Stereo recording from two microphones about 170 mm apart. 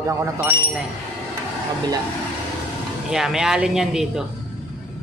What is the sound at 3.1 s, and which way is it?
Speech, 5° right (ahead or behind).